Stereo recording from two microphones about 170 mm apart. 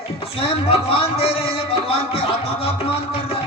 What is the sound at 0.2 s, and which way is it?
A man's voice, 35° left (ahead or behind).